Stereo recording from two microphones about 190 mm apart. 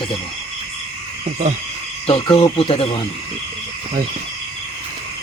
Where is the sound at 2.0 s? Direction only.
30° left (ahead or behind).